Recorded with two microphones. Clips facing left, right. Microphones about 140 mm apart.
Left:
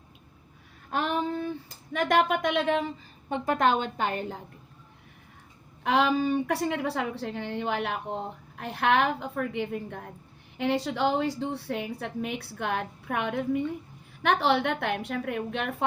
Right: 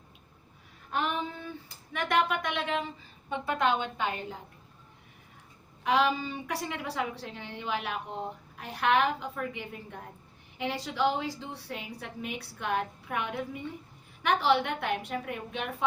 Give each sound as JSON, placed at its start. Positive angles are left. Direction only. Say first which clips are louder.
{"t": 0.9, "sound": "female singing", "louder": "left 4 dB", "side_deg": 40}
{"t": 2.3, "sound": "a woman's voice", "louder": "left 5 dB", "side_deg": 60}
{"t": 2.6, "sound": "a woman's voice", "louder": "left 6 dB", "side_deg": 45}
{"t": 5.8, "sound": "a woman's voice", "louder": "left 3 dB", "side_deg": 55}